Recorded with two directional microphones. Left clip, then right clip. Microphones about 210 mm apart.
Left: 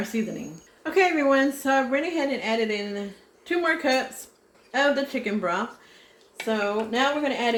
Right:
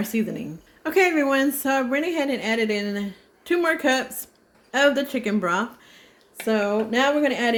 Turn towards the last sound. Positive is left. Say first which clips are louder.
# right 3 dB
turn(degrees=-55)  # may be behind; listen again after turning